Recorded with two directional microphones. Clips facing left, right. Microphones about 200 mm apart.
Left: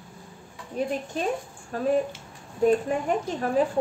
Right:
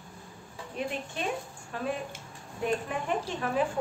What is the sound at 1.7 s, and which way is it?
A woman's voice, 40° left (ahead or behind).